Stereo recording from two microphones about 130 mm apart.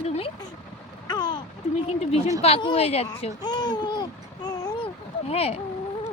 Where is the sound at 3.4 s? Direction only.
35° left (ahead or behind).